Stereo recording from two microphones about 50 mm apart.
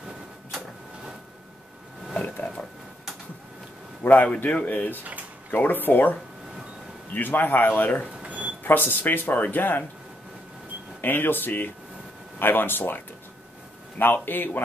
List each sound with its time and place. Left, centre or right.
2.2 s a sound: left
4.0 s speech: left
7.2 s speech: left
8.3 s a sound: right
8.6 s speech: left
11.0 s speech: left